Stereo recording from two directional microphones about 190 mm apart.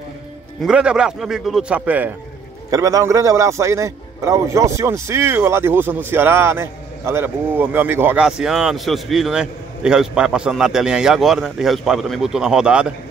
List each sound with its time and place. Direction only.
0.6 s a man's voice: 5° right (ahead or behind)